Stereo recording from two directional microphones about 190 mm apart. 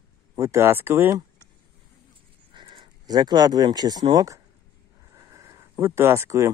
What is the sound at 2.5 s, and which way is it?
Speech, 25° right (ahead or behind).